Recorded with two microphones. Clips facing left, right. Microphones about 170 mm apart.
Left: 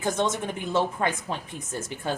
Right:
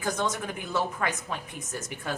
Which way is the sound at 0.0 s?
25° left (ahead or behind).